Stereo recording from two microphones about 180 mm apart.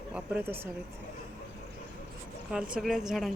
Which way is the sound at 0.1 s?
10° right (ahead or behind).